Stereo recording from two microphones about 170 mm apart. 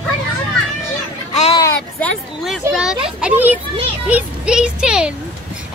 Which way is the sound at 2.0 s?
5° left (ahead or behind).